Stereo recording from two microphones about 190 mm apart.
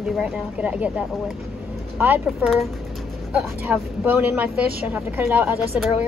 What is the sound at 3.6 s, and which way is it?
Speech, 10° right (ahead or behind).